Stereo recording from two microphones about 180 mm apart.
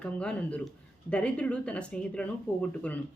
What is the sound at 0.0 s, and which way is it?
Speech, 5° left (ahead or behind).